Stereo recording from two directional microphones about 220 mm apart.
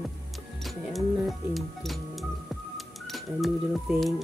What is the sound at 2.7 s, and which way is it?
Music, centre (ahead or behind).